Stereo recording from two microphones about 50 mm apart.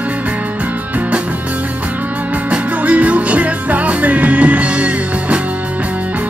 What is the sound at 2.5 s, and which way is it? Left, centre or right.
Music, right.